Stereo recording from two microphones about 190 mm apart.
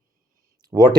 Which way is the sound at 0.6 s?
20° right (ahead or behind).